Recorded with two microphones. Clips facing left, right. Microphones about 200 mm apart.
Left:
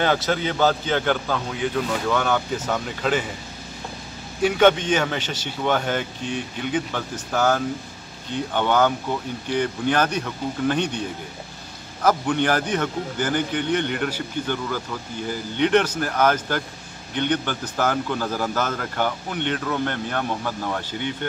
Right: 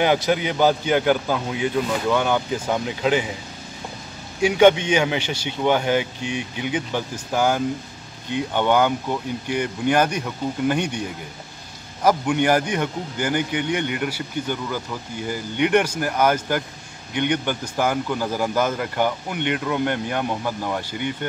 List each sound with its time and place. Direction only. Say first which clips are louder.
0.0 s a man's voice: right 2 dB; 15° right (ahead or behind)
4.4 s a man's voice: right 2 dB; 10° right (ahead or behind)